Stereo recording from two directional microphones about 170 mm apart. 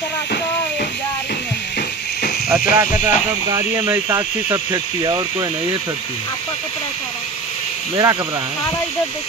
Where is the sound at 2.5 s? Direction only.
10° right (ahead or behind).